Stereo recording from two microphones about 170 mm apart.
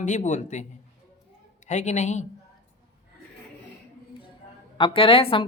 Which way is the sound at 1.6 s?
45° left (ahead or behind).